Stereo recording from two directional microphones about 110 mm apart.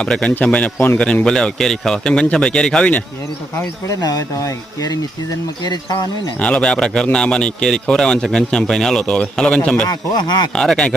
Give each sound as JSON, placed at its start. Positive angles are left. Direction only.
{"t": 0.0, "sound": "a man's voice", "side_deg": 10}
{"t": 3.8, "sound": "speech", "side_deg": 35}
{"t": 6.4, "sound": "a man's voice", "side_deg": 10}